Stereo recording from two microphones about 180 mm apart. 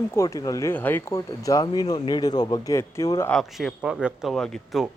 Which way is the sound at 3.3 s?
Centre (ahead or behind).